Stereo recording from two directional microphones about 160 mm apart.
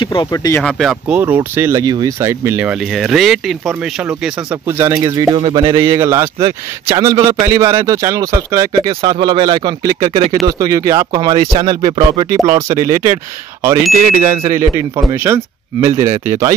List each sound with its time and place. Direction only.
0.0 s speech: 30° left (ahead or behind)
0.3 s speech: 20° left (ahead or behind)
0.7 s speech: centre (ahead or behind); by 5.8 s 30° right (ahead or behind)
5.8 s speech: 20° right (ahead or behind)
12.4 s speech: 20° right (ahead or behind)